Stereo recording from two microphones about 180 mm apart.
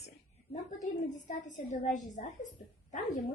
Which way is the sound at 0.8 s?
45° left (ahead or behind).